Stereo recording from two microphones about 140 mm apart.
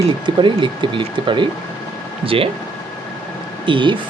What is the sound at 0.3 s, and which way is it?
Speech, 35° right (ahead or behind).